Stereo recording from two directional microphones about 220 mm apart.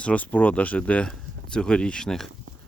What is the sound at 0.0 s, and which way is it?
Speech, 5° left (ahead or behind).